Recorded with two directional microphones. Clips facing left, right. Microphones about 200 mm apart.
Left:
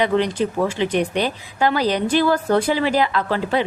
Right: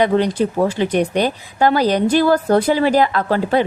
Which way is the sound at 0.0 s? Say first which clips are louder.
Right 3 dB; 40° right (ahead or behind).